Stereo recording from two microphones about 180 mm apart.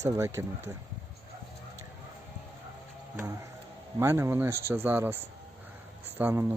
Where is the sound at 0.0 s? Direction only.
15° right (ahead or behind).